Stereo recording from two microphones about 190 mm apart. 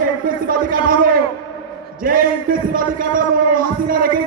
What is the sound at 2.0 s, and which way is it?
A man's voice, 45° right (ahead or behind).